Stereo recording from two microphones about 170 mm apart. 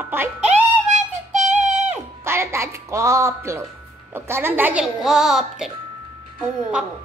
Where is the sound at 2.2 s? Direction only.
15° right (ahead or behind).